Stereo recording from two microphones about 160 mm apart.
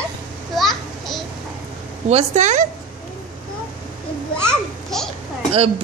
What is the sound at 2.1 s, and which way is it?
Speech, 45° right (ahead or behind).